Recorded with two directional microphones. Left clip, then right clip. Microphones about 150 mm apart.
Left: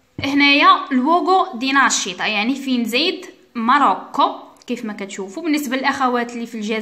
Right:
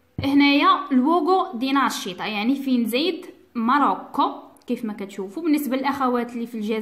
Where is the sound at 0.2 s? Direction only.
10° right (ahead or behind).